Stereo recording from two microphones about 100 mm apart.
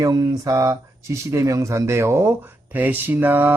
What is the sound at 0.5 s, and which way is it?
Speech, 30° right (ahead or behind).